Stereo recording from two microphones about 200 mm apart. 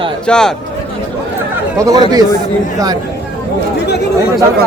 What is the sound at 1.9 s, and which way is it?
Speech, 20° right (ahead or behind).